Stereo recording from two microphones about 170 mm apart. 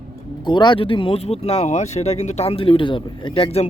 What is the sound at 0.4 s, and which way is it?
Speech, 25° left (ahead or behind).